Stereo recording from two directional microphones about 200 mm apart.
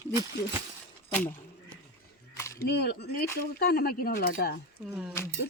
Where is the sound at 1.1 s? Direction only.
10° left (ahead or behind).